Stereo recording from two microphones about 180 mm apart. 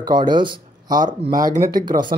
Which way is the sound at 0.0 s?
25° right (ahead or behind).